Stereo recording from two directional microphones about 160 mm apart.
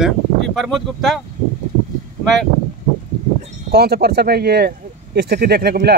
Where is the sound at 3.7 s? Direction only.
80° right.